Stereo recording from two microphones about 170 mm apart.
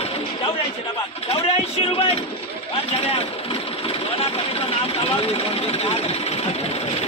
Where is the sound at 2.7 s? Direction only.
35° left (ahead or behind).